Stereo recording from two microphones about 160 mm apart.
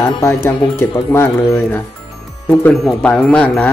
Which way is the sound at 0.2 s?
20° left (ahead or behind).